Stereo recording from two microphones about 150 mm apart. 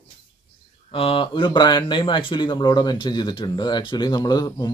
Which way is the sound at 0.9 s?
35° left (ahead or behind).